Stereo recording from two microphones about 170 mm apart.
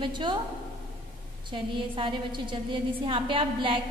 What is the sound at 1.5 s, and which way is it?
A woman's voice, 30° right (ahead or behind).